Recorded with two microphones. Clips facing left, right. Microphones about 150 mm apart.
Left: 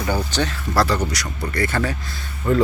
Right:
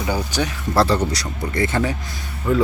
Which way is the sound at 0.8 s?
30° right (ahead or behind).